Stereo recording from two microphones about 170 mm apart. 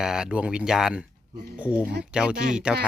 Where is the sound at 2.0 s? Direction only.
5° right (ahead or behind).